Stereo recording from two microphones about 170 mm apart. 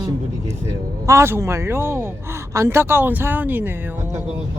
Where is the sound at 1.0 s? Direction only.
15° right (ahead or behind).